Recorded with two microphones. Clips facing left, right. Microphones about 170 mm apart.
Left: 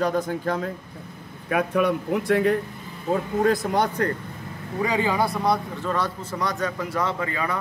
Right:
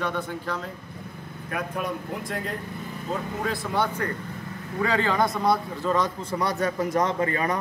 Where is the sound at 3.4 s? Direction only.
40° left (ahead or behind).